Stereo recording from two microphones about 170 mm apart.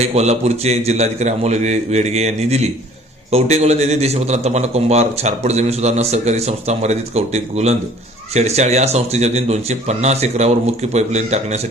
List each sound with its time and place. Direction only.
0.1 s a man's voice: 40° right (ahead or behind)